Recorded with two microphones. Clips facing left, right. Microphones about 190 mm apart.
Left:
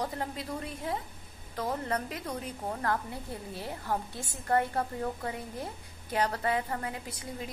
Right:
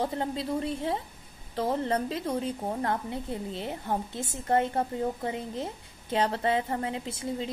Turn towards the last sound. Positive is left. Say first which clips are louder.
# right 7 dB
turn(degrees=-25)  # may be behind; listen again after turning